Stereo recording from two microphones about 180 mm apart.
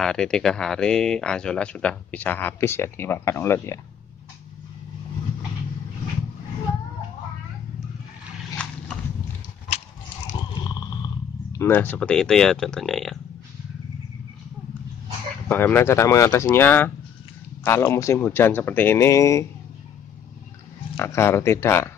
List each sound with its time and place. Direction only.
0.0 s speech: 5° left (ahead or behind)
11.5 s speech: 15° left (ahead or behind)
15.4 s speech: 10° left (ahead or behind)
20.9 s speech: 15° left (ahead or behind)